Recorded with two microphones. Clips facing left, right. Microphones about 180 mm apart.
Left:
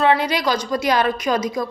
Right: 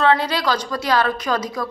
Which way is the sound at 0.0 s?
15° left (ahead or behind).